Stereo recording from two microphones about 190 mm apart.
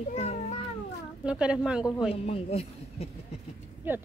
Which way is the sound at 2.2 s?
30° left (ahead or behind).